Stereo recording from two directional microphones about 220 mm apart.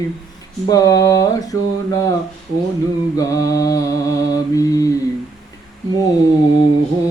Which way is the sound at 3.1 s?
15° left (ahead or behind).